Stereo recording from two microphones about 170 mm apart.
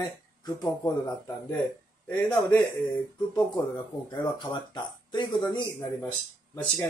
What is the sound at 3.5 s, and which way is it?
Speech, 25° left (ahead or behind).